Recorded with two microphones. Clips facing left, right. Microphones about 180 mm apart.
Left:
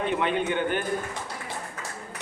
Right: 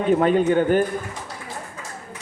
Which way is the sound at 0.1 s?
40° right (ahead or behind).